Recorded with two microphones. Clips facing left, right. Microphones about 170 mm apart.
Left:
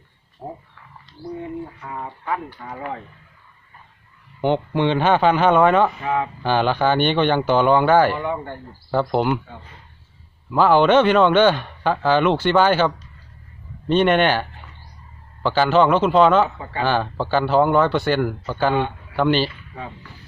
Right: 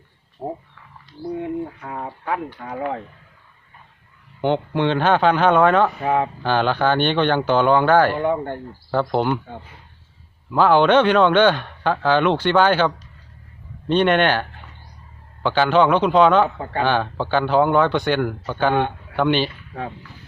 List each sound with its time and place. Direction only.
0.4 s speech: 20° right (ahead or behind)
1.8 s speech: 60° right (ahead or behind)
4.4 s speech: 10° left (ahead or behind)
6.0 s speech: 50° right (ahead or behind)
6.4 s speech: 10° left (ahead or behind)
8.1 s speech: 50° right (ahead or behind)
8.9 s speech: 10° left (ahead or behind)
10.5 s speech: 5° left (ahead or behind)
15.4 s speech: 5° left (ahead or behind)
18.7 s speech: 55° right (ahead or behind)
19.1 s speech: centre (ahead or behind)